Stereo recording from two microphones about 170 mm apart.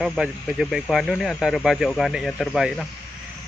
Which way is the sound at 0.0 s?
Centre (ahead or behind).